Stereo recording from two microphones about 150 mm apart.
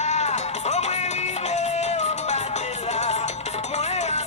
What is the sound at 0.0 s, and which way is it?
Music, 50° left (ahead or behind).